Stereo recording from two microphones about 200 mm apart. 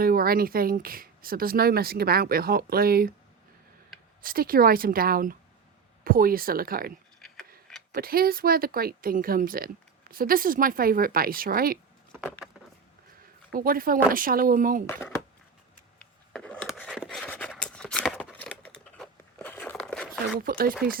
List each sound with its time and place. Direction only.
0.0 s speech: 45° right (ahead or behind)
4.2 s speech: 45° right (ahead or behind)
7.9 s speech: 50° right (ahead or behind)
13.5 s speech: 45° right (ahead or behind)
14.8 s speech: 10° left (ahead or behind)
16.0 s a sound: 5° left (ahead or behind)
17.5 s scissors: 5° left (ahead or behind)
20.4 s speech: 45° right (ahead or behind)